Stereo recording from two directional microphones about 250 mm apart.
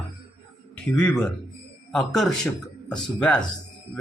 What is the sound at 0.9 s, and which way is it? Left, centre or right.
Speech, centre.